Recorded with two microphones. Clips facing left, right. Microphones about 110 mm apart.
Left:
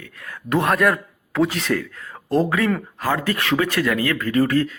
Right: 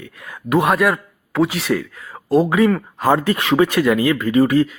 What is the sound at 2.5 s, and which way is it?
Speech, 15° right (ahead or behind).